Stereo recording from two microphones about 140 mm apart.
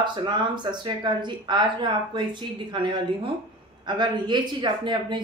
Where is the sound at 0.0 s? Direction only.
35° right (ahead or behind).